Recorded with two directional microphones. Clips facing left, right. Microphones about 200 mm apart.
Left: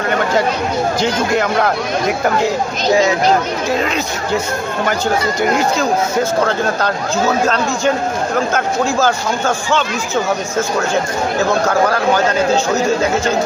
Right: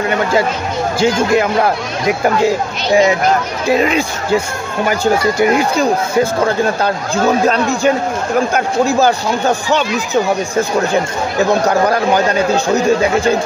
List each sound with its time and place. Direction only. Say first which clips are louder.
0.9 s a man's voice: right 8 dB; 10° right (ahead or behind)
6.4 s a man's voice: right 2 dB; 15° right (ahead or behind)